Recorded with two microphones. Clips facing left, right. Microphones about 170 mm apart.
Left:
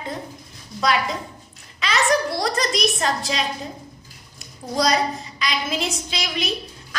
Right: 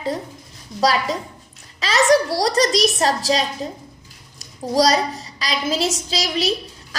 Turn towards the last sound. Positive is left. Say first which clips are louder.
# right 5 dB
turn(degrees=-35)  # may be behind; listen again after turning